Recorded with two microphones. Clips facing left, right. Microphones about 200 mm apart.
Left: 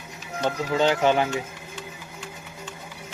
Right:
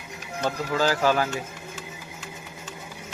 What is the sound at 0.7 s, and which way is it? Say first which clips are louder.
Speech: left 2 dB; 25° left (ahead or behind).